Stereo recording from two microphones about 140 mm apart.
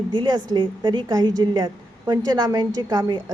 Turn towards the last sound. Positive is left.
turn(degrees=-30)  # may be behind; listen again after turning